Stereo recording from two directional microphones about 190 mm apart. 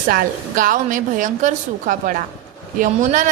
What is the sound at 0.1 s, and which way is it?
A woman's voice, 45° right (ahead or behind).